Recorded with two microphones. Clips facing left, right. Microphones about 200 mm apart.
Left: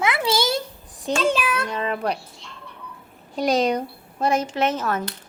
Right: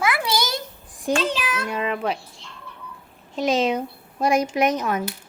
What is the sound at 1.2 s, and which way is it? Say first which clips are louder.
Speech: left 3 dB; 50° left (ahead or behind).